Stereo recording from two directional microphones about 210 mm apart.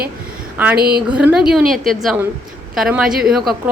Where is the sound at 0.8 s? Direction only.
45° right (ahead or behind).